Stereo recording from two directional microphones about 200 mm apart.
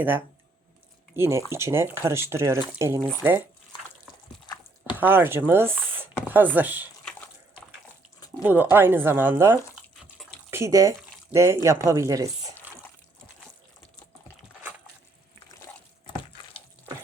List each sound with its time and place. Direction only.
1.1 s speech: 10° right (ahead or behind)
4.9 s speech: 10° right (ahead or behind)
8.4 s speech: 10° right (ahead or behind)